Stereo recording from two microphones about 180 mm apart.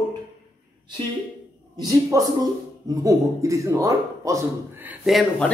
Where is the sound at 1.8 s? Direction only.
20° right (ahead or behind).